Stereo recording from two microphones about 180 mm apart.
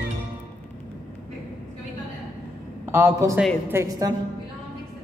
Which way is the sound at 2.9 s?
15° right (ahead or behind).